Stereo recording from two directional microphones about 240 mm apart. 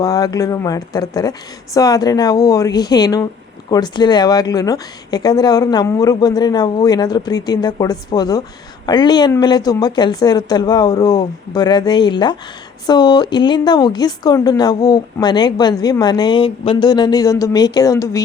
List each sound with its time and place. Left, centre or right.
0.0 s speech: centre